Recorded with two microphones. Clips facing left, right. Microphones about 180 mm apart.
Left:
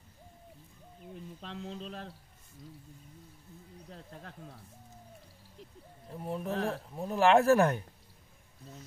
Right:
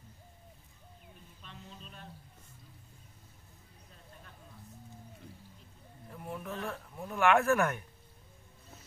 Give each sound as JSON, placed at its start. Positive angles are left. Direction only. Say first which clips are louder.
{"t": 1.4, "sound": "speech", "louder": "left 10 dB", "side_deg": 90}
{"t": 3.9, "sound": "speech", "louder": "left 8 dB", "side_deg": 80}
{"t": 6.0, "sound": "speech", "louder": "left 5 dB", "side_deg": 35}